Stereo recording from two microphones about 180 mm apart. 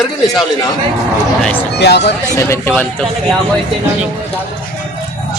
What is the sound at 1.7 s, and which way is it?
Speech, 70° left (ahead or behind).